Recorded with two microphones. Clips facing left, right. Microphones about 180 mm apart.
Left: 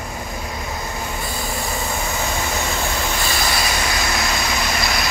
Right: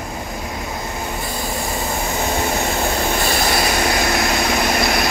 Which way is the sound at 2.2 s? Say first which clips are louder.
Right 4 dB; 35° right (ahead or behind).